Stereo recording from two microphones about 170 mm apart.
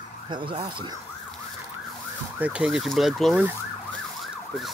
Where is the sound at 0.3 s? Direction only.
25° right (ahead or behind).